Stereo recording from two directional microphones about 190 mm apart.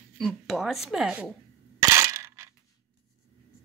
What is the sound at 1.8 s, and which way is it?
Crushing, 15° right (ahead or behind).